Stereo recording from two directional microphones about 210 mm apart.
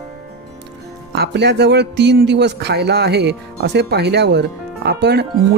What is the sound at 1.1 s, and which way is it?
A man's voice, 55° right (ahead or behind).